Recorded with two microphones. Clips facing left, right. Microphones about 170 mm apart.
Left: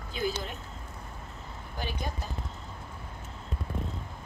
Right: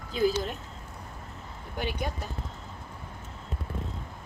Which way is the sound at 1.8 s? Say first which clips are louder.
Right 4 dB; 65° right (ahead or behind).